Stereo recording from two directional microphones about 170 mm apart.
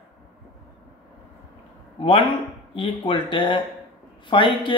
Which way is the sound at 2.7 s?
30° left (ahead or behind).